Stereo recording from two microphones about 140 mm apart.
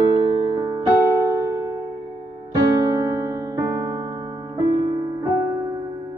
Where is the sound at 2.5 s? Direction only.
25° right (ahead or behind).